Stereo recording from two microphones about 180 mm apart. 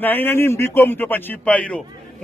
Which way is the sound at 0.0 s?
10° left (ahead or behind).